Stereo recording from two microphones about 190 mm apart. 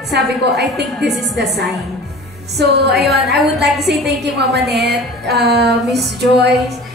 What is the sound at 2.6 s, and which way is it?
A woman's voice, 60° right (ahead or behind).